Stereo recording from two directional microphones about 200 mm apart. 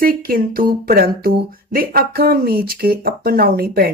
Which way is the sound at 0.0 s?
45° right (ahead or behind).